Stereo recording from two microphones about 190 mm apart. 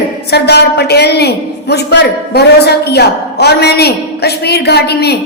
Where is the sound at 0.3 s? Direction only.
60° left (ahead or behind).